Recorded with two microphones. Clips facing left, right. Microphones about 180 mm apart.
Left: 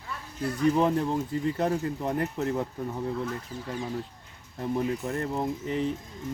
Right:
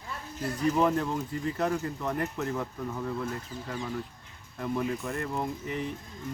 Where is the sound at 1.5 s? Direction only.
25° left (ahead or behind).